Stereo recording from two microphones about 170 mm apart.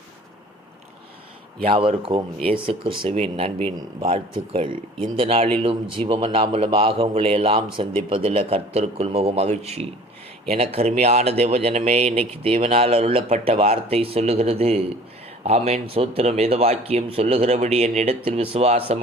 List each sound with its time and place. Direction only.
1.6 s a man's voice: 30° right (ahead or behind)